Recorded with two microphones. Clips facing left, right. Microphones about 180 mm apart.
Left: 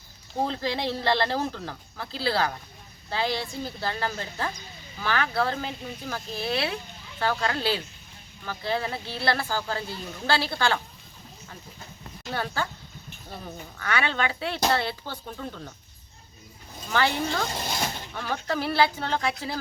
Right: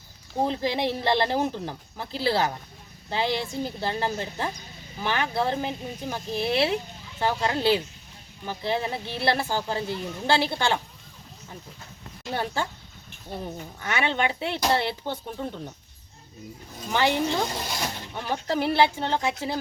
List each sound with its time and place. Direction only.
0.4 s speech: 20° right (ahead or behind)
12.3 s speech: 25° right (ahead or behind)
16.9 s speech: 20° right (ahead or behind)